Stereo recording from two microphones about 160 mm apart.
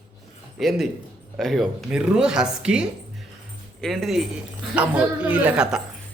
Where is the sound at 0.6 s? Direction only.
Centre (ahead or behind).